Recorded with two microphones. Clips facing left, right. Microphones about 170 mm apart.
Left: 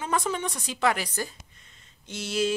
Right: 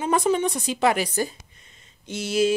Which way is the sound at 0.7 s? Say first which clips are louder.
Right 3 dB; 15° right (ahead or behind).